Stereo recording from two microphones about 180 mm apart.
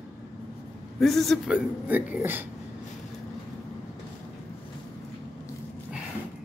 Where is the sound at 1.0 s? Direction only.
Centre (ahead or behind).